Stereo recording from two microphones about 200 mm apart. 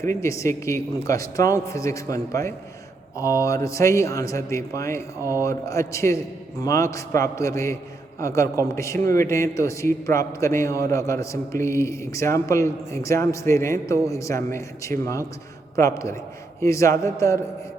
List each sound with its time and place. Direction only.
0.0 s a man's voice: 15° left (ahead or behind)